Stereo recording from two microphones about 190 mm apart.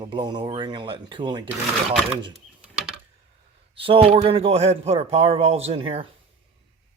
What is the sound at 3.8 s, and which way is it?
Speech, 30° right (ahead or behind).